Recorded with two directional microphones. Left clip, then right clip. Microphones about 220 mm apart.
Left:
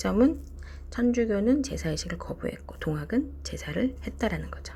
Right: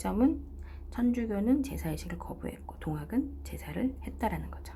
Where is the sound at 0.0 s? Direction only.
15° left (ahead or behind).